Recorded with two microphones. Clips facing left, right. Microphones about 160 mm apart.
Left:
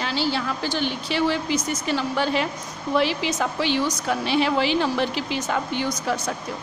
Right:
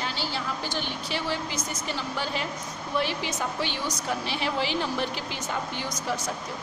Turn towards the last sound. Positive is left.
turn(degrees=85)